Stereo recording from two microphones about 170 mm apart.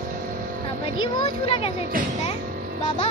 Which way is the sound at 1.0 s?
35° left (ahead or behind).